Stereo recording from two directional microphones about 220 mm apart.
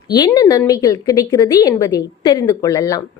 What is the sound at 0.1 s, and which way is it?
A woman's voice, 15° left (ahead or behind).